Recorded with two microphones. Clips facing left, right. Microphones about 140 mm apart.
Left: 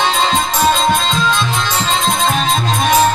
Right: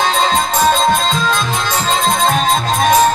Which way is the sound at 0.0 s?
40° right (ahead or behind).